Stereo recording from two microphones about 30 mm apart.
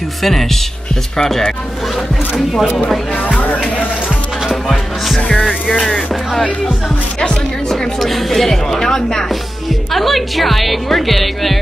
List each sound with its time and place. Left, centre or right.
0.2 s a woman's voice: centre
1.1 s a woman's voice: centre
3.3 s music: left
4.6 s a woman's voice: centre
8.0 s a woman's voice: centre
9.9 s a woman's voice: centre